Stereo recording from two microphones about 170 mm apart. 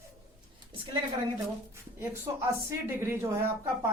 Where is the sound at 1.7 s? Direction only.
15° right (ahead or behind).